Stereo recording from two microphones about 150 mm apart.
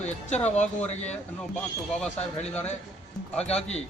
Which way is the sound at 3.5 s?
45° left (ahead or behind).